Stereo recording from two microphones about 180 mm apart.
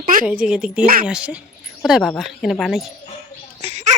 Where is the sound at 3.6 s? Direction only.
40° right (ahead or behind).